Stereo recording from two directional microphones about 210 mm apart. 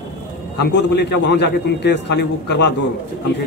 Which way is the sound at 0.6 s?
55° left (ahead or behind).